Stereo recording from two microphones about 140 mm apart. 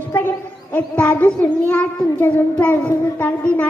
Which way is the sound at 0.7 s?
10° left (ahead or behind).